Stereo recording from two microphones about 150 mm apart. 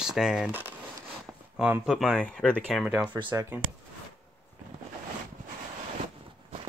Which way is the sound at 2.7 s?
5° right (ahead or behind).